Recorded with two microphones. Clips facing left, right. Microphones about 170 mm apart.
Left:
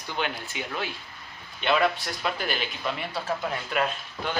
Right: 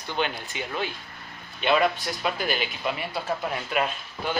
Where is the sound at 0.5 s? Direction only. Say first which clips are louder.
Right 2 dB; 5° left (ahead or behind).